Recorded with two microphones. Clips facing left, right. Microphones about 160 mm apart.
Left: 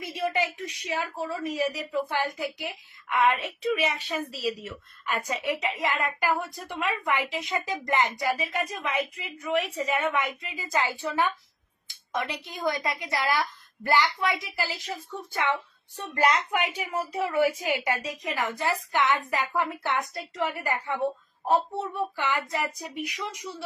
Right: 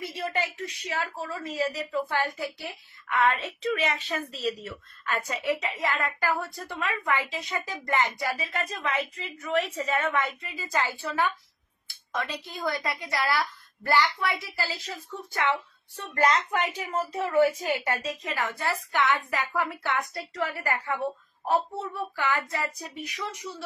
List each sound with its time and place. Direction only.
0.0 s a woman's voice: 15° left (ahead or behind)
22.2 s a woman's voice: 15° left (ahead or behind)